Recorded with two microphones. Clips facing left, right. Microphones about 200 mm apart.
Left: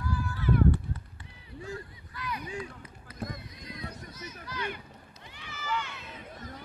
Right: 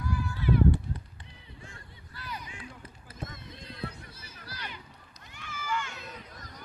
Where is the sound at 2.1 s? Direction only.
30° right (ahead or behind).